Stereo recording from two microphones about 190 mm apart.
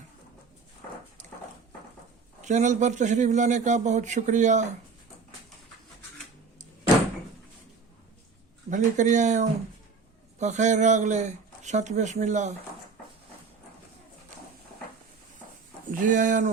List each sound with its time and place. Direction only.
2.4 s speech: 40° right (ahead or behind)
8.7 s speech: 40° right (ahead or behind)
15.9 s speech: 45° right (ahead or behind)